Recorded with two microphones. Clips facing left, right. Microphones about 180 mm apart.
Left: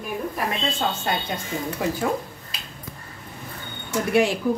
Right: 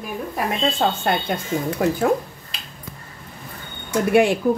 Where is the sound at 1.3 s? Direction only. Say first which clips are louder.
Right 5 dB; 60° right (ahead or behind).